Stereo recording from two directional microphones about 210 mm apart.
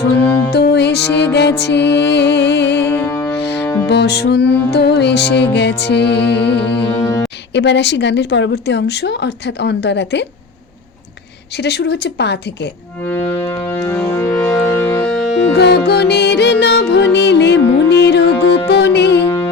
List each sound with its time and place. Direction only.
0.2 s music: 10° left (ahead or behind)
0.5 s music: 55° left (ahead or behind)
2.9 s music: 10° left (ahead or behind)
3.8 s music: 50° left (ahead or behind)
7.0 s speech: 10° left (ahead or behind)
7.5 s a woman's voice: 55° left (ahead or behind)
11.6 s music: 50° left (ahead or behind)
13.1 s organ: 10° left (ahead or behind)
15.5 s music: 50° left (ahead or behind)